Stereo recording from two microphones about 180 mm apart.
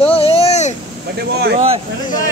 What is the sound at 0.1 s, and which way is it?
Vehicle, 35° left (ahead or behind).